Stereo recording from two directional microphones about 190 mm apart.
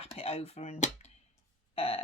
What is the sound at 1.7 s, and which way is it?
Burping, 30° left (ahead or behind).